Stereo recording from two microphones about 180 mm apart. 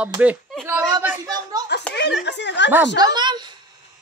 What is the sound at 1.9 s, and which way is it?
Speech, 70° left (ahead or behind).